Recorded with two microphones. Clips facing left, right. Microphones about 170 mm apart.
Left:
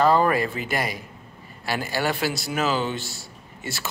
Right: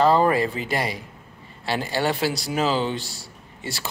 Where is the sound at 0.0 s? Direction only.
25° right (ahead or behind).